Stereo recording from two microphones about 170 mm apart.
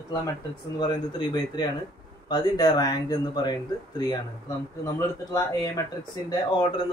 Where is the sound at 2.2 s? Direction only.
25° left (ahead or behind).